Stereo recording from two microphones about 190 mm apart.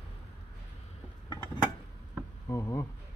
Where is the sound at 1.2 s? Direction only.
25° left (ahead or behind).